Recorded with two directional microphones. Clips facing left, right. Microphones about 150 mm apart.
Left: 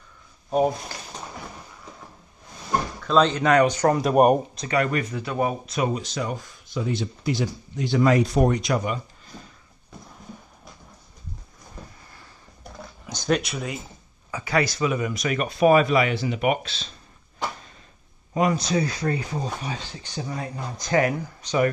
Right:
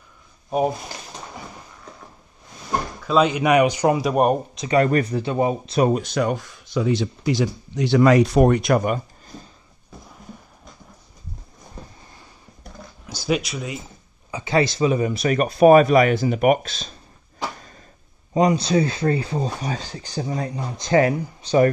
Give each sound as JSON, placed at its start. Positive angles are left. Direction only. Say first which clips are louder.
{"t": 3.0, "sound": "speech", "louder": "right 2 dB", "side_deg": -10}
{"t": 4.0, "sound": "speech", "louder": "left 1 dB", "side_deg": 5}
{"t": 4.6, "sound": "speech", "louder": "right 7 dB", "side_deg": -35}
{"t": 5.8, "sound": "speech", "louder": "right 8 dB", "side_deg": -50}
{"t": 13.0, "sound": "speech", "louder": "right 1 dB", "side_deg": -5}
{"t": 14.3, "sound": "speech", "louder": "right 4 dB", "side_deg": -25}
{"t": 18.3, "sound": "speech", "louder": "right 4 dB", "side_deg": -20}
{"t": 20.5, "sound": "speech", "louder": "right 4 dB", "side_deg": -25}